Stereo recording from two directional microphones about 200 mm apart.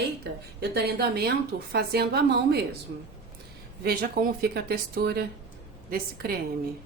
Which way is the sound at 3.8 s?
50° right (ahead or behind).